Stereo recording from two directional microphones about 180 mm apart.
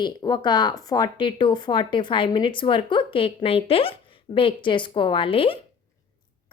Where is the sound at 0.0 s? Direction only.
25° left (ahead or behind).